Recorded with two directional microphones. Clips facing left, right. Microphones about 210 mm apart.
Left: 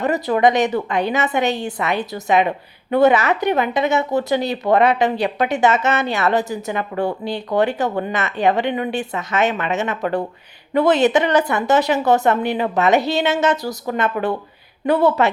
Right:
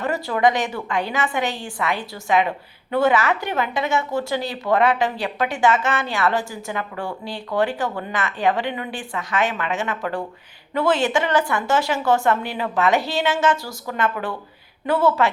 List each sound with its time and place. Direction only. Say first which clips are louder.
0.0 s speech: left 4 dB; 20° left (ahead or behind)